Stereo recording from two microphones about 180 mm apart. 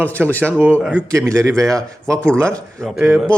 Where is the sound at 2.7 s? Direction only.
Centre (ahead or behind).